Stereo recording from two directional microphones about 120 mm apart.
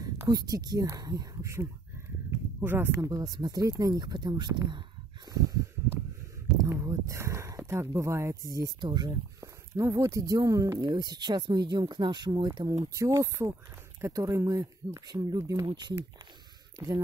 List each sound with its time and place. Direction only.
0.3 s speech: 30° right (ahead or behind)
5.3 s a sound: 30° right (ahead or behind)
6.6 s speech: 25° right (ahead or behind)